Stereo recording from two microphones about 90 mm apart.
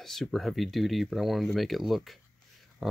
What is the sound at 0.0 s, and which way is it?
Speech, 5° left (ahead or behind).